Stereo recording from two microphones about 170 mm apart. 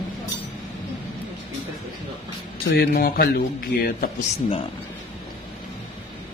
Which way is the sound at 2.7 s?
65° left (ahead or behind).